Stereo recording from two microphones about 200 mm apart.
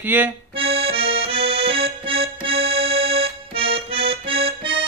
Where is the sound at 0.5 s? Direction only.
30° right (ahead or behind).